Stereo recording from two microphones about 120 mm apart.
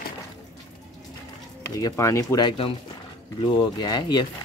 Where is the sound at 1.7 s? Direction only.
25° left (ahead or behind).